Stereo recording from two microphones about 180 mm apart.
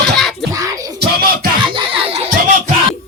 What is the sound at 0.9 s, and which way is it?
Music, 55° right (ahead or behind).